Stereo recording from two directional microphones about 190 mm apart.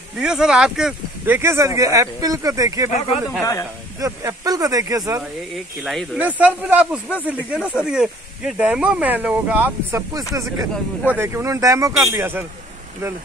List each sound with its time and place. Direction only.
0.2 s speech: 5° right (ahead or behind)
4.0 s speech: 15° right (ahead or behind)
5.5 s speech: centre (ahead or behind)